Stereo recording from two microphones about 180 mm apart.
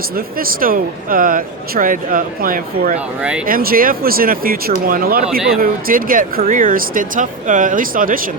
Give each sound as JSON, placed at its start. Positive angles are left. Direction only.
{"t": 0.3, "sound": "speech", "side_deg": -55}